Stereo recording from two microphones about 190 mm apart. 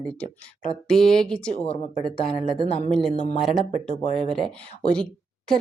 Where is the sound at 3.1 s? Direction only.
35° left (ahead or behind).